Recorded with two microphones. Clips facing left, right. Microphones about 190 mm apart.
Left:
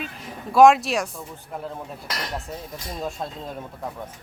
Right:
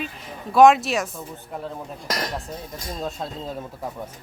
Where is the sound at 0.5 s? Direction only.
Centre (ahead or behind).